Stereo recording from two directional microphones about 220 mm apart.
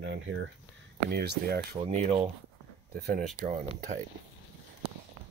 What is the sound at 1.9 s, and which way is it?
Speech, 30° right (ahead or behind).